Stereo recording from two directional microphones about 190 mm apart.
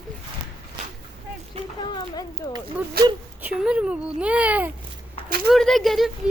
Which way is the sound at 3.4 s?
5° right (ahead or behind).